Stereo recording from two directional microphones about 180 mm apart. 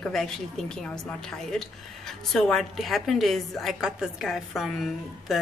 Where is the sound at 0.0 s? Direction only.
Centre (ahead or behind).